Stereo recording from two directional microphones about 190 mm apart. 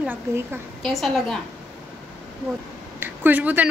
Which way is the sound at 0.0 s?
10° right (ahead or behind).